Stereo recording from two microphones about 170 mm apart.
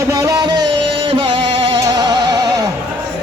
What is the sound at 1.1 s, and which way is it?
Music, 30° right (ahead or behind).